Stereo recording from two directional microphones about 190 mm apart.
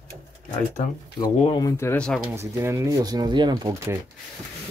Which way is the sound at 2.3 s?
15° right (ahead or behind).